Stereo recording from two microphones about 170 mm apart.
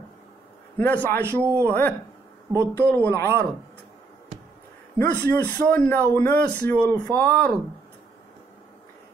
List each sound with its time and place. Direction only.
0.7 s speech: 10° left (ahead or behind)
1.2 s a man's voice: 15° right (ahead or behind)
1.7 s speech: 10° left (ahead or behind)
4.9 s speech: 10° left (ahead or behind)